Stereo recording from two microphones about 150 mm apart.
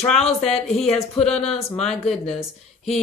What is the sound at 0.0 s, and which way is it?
Speech, 5° left (ahead or behind).